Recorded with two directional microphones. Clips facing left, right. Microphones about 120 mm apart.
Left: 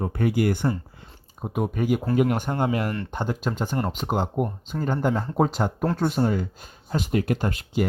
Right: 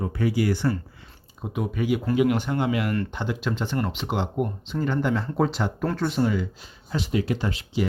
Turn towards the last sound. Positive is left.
turn(degrees=50)  # may be behind; listen again after turning